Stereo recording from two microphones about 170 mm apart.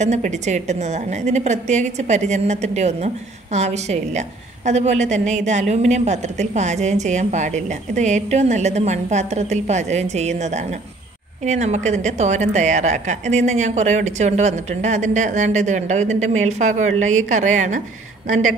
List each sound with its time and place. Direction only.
0.0 s a woman's voice: 45° right (ahead or behind)